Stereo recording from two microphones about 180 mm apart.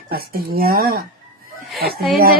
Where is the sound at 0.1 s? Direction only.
55° right (ahead or behind).